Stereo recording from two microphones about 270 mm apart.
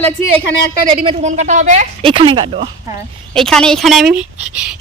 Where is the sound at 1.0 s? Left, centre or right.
Right.